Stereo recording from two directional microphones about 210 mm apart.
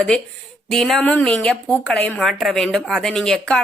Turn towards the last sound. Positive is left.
turn(degrees=5)  # may be behind; listen again after turning